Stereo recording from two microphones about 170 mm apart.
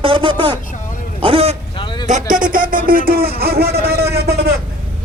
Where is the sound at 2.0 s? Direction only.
45° right (ahead or behind).